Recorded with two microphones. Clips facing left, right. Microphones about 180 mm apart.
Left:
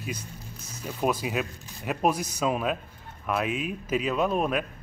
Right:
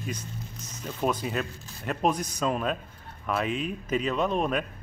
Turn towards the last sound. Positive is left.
turn(degrees=5)  # may be behind; listen again after turning